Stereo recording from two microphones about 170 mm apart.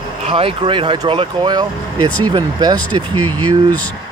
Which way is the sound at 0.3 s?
35° right (ahead or behind).